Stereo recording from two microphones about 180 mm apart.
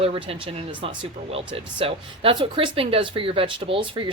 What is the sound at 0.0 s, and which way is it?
Speech, 30° right (ahead or behind).